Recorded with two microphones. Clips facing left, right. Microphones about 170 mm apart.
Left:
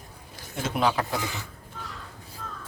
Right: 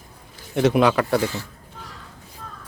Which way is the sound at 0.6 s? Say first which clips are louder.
Right 8 dB; 70° right (ahead or behind).